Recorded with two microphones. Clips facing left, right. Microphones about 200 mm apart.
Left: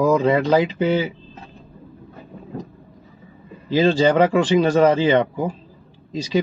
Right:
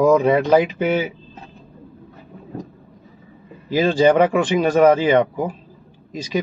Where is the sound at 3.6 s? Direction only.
10° right (ahead or behind).